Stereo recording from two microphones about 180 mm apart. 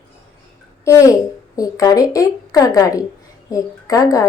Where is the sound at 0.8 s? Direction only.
15° left (ahead or behind).